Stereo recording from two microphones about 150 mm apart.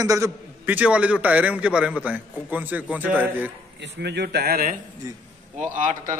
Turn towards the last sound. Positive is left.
turn(degrees=-60)  # may be behind; listen again after turning